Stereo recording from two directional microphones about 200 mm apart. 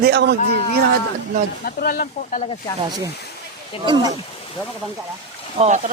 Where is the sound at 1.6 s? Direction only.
45° left (ahead or behind).